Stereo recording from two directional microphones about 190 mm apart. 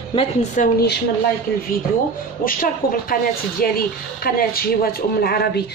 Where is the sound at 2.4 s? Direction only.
50° left (ahead or behind).